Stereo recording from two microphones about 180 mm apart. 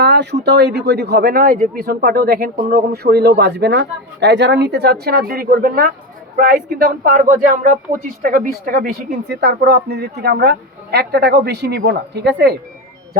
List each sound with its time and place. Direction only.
0.0 s speech: 70° right (ahead or behind)